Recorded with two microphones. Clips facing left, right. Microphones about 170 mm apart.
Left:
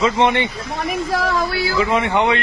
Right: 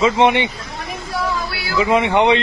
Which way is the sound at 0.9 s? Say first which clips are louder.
Left 3 dB; 90° left.